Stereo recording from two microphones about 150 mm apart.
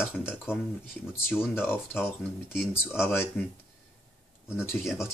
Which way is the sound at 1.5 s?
15° left (ahead or behind).